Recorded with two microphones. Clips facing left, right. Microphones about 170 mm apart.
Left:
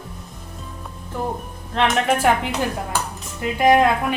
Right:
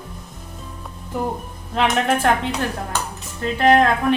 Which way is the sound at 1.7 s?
Centre (ahead or behind).